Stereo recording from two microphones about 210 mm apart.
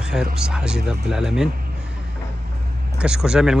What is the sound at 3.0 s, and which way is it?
Speech, 5° right (ahead or behind).